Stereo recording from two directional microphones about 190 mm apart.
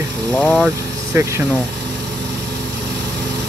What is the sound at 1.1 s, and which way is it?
Speech, 15° right (ahead or behind).